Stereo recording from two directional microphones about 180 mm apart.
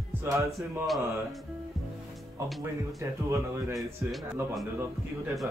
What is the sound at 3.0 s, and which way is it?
Speech, 15° right (ahead or behind).